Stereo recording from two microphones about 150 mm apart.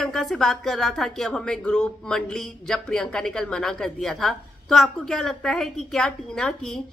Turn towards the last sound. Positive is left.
turn(degrees=5)  # may be behind; listen again after turning